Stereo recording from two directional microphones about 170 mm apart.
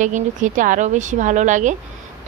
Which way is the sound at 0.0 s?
50° right (ahead or behind).